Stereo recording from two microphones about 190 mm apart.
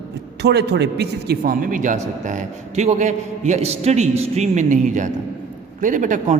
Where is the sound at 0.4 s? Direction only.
60° right (ahead or behind).